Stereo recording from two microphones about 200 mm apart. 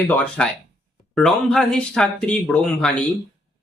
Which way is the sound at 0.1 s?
5° left (ahead or behind).